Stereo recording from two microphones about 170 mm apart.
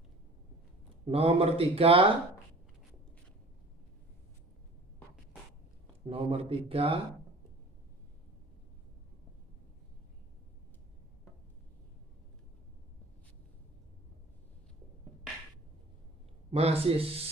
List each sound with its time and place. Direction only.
1.0 s speech: 35° right (ahead or behind)
6.0 s speech: 35° right (ahead or behind)
16.5 s speech: 35° right (ahead or behind)